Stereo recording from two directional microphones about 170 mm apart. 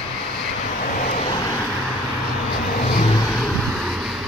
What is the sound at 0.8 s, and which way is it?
Vehicle, 45° left (ahead or behind).